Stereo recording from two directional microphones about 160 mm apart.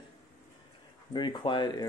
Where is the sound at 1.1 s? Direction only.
30° left (ahead or behind).